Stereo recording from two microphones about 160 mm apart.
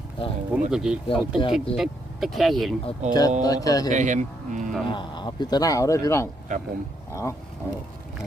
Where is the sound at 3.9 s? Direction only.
50° right (ahead or behind).